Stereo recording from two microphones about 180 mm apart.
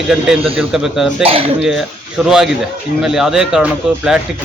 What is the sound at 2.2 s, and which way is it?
Speech, 5° right (ahead or behind).